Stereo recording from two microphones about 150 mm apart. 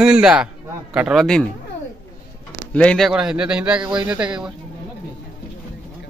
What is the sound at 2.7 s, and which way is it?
A man's voice, 5° left (ahead or behind).